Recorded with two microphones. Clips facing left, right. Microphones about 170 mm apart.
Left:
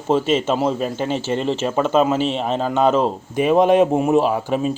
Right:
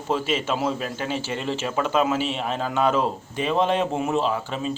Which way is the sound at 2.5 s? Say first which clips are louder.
Left 5 dB; 25° left (ahead or behind).